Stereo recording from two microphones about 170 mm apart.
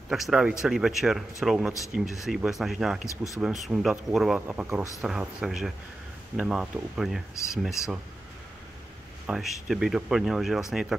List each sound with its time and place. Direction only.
0.1 s speech: centre (ahead or behind)
7.3 s speech: 15° left (ahead or behind)
9.2 s speech: 5° right (ahead or behind)